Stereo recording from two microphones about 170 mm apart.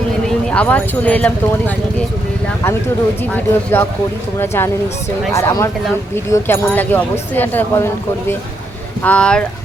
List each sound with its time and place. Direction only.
0.4 s speech: 5° left (ahead or behind)
3.3 s speech: 15° left (ahead or behind)
9.0 s speech: 10° left (ahead or behind)